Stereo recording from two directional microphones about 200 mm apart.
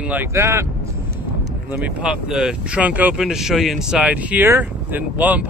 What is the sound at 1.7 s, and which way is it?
Speech, 5° right (ahead or behind).